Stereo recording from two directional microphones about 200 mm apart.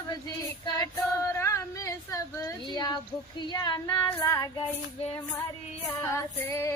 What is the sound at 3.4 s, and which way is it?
Female singing, 20° left (ahead or behind).